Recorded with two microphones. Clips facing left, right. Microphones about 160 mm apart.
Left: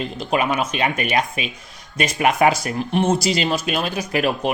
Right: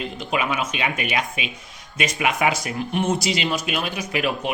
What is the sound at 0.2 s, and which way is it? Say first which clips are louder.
Speech: left 4 dB; 40° left (ahead or behind).